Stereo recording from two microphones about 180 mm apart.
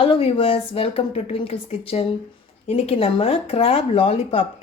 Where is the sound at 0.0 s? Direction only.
30° left (ahead or behind).